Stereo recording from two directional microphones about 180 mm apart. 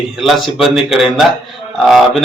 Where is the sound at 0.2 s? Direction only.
Centre (ahead or behind).